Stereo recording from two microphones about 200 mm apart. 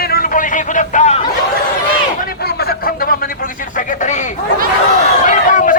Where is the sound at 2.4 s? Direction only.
50° left (ahead or behind).